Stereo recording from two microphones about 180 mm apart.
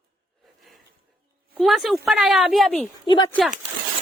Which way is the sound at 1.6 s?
Centre (ahead or behind).